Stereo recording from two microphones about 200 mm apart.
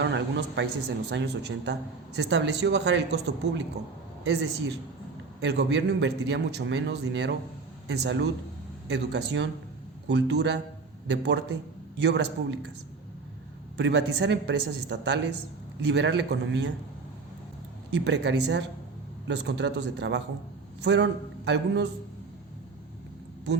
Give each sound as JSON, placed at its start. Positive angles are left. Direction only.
{"t": 0.0, "sound": "a woman's voice", "side_deg": -60}
{"t": 13.7, "sound": "a man's voice", "side_deg": -60}
{"t": 17.9, "sound": "a man's voice", "side_deg": -60}